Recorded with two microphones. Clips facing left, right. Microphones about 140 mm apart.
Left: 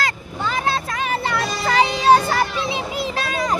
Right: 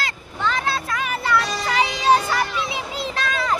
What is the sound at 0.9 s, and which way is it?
Music, 30° left (ahead or behind).